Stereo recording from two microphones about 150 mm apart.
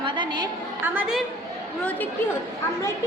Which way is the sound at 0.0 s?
30° right (ahead or behind).